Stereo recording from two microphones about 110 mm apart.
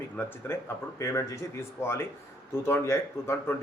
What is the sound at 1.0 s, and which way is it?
Speech, 30° left (ahead or behind).